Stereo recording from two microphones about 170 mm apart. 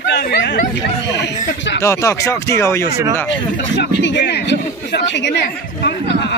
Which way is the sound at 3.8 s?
75° left (ahead or behind).